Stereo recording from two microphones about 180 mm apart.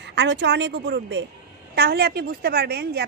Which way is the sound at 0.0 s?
75° right (ahead or behind).